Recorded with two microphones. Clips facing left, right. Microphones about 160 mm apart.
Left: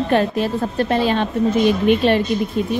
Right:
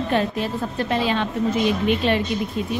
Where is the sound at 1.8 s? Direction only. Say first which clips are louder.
Left 5 dB; 55° left (ahead or behind).